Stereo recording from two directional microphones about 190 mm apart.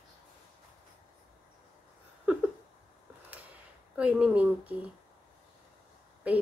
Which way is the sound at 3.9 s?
5° right (ahead or behind).